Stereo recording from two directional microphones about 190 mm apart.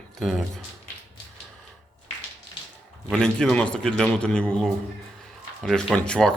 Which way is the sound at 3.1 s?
5° left (ahead or behind).